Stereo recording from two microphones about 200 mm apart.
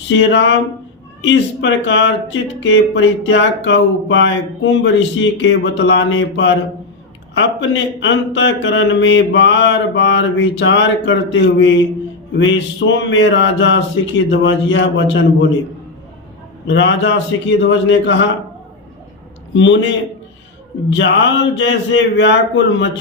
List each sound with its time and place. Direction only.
0.1 s speech: 65° left (ahead or behind)
16.6 s speech: 65° left (ahead or behind)
19.5 s speech: 65° left (ahead or behind)
21.5 s speech: 60° left (ahead or behind)